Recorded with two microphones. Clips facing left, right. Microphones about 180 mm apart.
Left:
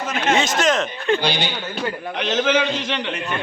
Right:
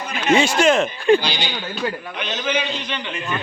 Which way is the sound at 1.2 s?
55° left (ahead or behind).